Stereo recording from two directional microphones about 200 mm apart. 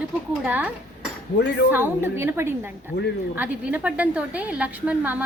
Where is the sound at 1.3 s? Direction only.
60° left (ahead or behind).